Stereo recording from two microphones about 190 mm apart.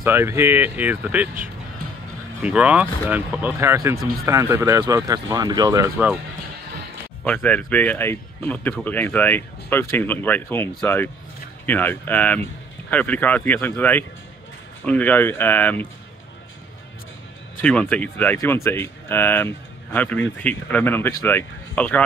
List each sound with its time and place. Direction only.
0.0 s speech: 10° right (ahead or behind)
2.4 s speech: 5° right (ahead or behind)
7.2 s speech: 10° left (ahead or behind)
17.6 s speech: 5° left (ahead or behind)